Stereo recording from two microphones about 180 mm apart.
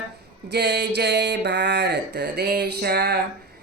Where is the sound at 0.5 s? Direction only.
65° right (ahead or behind).